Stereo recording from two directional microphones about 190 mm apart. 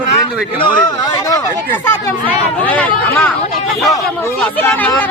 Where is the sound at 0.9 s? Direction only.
20° left (ahead or behind).